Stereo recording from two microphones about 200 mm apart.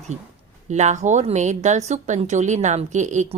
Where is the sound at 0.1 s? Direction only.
35° right (ahead or behind).